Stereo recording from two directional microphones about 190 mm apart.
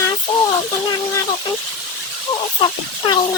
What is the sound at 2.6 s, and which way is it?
Speech, 25° left (ahead or behind).